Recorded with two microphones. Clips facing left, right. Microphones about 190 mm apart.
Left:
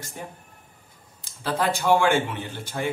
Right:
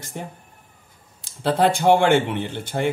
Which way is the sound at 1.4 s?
60° right (ahead or behind).